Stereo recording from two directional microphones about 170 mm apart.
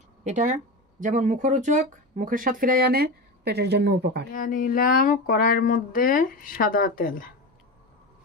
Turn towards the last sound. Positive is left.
turn(degrees=60)  # may be behind; listen again after turning